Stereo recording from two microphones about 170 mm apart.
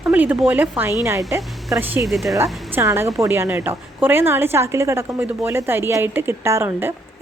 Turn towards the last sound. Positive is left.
turn(degrees=-15)  # may be behind; listen again after turning